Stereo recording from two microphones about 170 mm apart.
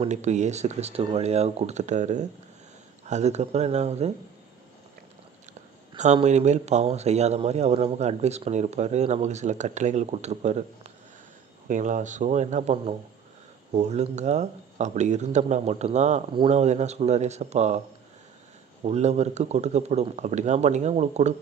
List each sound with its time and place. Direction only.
0.0 s speech: 40° right (ahead or behind)
6.2 s speech: 40° right (ahead or behind)
18.8 s speech: 40° right (ahead or behind)